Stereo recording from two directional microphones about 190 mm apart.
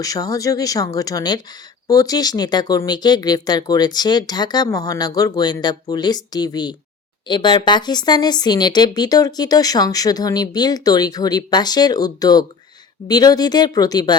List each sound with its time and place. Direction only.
0.0 s speech: 20° left (ahead or behind)